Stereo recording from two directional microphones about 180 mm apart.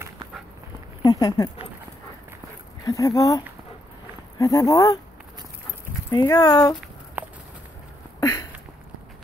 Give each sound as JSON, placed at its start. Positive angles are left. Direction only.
{"t": 1.0, "sound": "speech", "side_deg": 20}
{"t": 2.8, "sound": "speech", "side_deg": 20}
{"t": 6.1, "sound": "speech", "side_deg": 20}
{"t": 7.2, "sound": "walk", "side_deg": -10}
{"t": 8.2, "sound": "a sound", "side_deg": 20}